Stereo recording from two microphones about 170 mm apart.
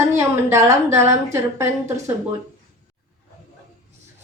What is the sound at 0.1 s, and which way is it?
A woman's voice, 15° right (ahead or behind).